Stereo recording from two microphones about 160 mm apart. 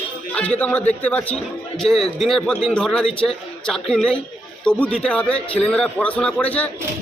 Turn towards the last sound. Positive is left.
turn(degrees=10)  # may be behind; listen again after turning